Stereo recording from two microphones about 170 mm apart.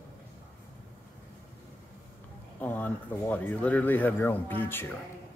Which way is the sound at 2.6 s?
10° left (ahead or behind).